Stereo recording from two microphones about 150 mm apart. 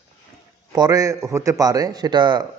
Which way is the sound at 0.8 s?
20° right (ahead or behind).